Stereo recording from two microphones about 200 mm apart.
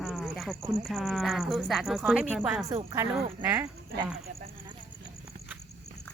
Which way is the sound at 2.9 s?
15° right (ahead or behind).